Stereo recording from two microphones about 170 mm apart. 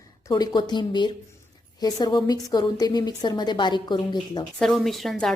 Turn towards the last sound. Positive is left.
turn(degrees=0)  # may be behind; listen again after turning